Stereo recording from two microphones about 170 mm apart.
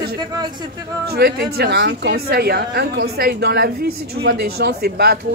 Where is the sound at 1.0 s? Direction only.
70° right (ahead or behind).